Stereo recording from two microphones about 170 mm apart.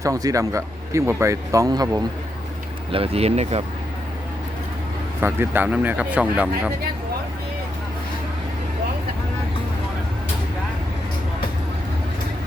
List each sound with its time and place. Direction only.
0.0 s speech: 20° right (ahead or behind)
2.9 s speech: 35° right (ahead or behind)
5.2 s speech: 15° right (ahead or behind)